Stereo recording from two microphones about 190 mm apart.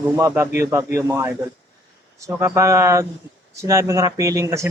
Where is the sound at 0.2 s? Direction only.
15° right (ahead or behind).